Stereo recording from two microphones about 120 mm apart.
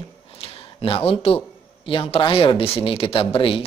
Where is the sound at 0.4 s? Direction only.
50° left (ahead or behind).